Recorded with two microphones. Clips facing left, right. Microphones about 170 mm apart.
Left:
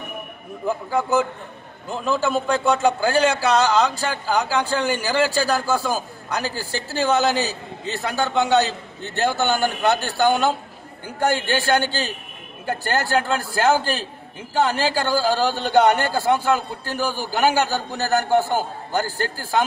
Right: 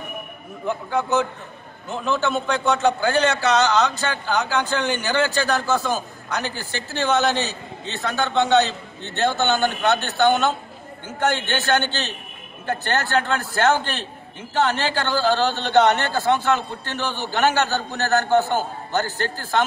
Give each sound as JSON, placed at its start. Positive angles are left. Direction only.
{"t": 0.7, "sound": "a man's voice", "side_deg": 5}
{"t": 6.4, "sound": "a woman's voice", "side_deg": 35}
{"t": 7.0, "sound": "a man's voice", "side_deg": 15}